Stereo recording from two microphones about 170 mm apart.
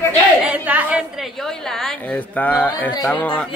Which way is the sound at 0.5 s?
10° right (ahead or behind).